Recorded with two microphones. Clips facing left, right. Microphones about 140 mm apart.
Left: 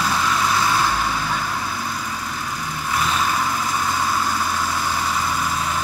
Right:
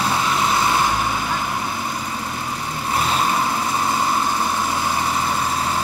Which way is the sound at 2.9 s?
30° right (ahead or behind).